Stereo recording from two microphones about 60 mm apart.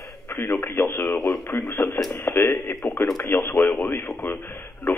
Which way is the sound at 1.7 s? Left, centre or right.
Left.